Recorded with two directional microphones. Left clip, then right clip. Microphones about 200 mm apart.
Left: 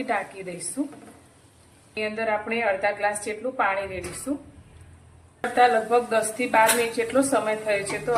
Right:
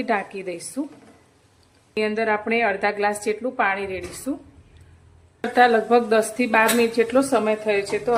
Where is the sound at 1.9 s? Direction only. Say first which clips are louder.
Right 4 dB; 55° right (ahead or behind).